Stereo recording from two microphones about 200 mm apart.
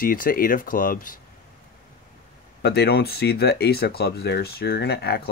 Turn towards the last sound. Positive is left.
turn(degrees=55)  # may be behind; listen again after turning